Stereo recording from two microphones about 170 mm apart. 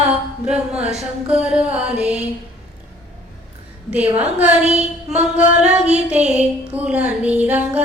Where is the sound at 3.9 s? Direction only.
10° right (ahead or behind).